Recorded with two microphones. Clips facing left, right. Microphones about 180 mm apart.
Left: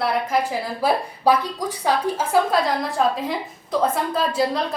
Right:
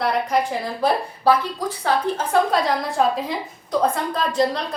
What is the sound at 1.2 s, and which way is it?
A woman's voice, 15° left (ahead or behind).